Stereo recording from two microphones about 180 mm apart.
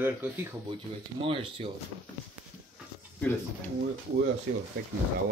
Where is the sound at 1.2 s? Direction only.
30° right (ahead or behind).